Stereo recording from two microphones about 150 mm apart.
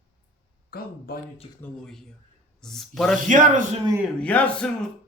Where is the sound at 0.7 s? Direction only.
90° left.